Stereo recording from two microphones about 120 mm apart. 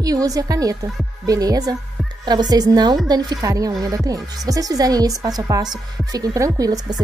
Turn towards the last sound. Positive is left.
turn(degrees=-30)  # may be behind; listen again after turning